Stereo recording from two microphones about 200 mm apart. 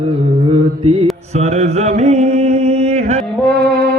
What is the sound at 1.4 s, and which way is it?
Mantra, 35° right (ahead or behind).